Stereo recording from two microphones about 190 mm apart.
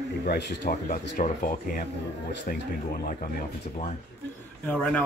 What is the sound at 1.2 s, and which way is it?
Speech, 45° left (ahead or behind).